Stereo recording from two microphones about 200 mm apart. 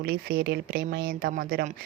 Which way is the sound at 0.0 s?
50° right (ahead or behind).